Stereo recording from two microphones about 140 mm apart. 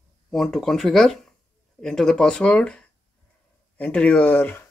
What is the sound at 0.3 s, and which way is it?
Speech, centre (ahead or behind).